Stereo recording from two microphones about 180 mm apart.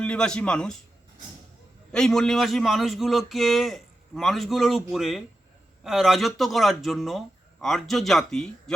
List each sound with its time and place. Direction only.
0.0 s a man's voice: 5° left (ahead or behind)
1.9 s a man's voice: 5° left (ahead or behind)